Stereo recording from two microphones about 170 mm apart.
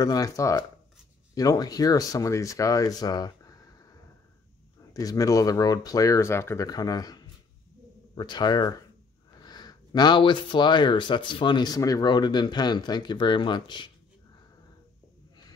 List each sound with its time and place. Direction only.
0.0 s speech: 20° left (ahead or behind)
4.9 s speech: 20° left (ahead or behind)